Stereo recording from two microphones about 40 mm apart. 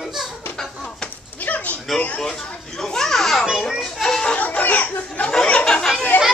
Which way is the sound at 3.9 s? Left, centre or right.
Centre.